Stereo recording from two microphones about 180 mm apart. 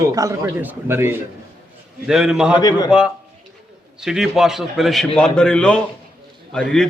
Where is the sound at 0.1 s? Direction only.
20° right (ahead or behind).